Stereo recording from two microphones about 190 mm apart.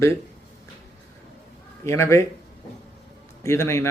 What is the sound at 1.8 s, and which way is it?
Speech, 15° left (ahead or behind).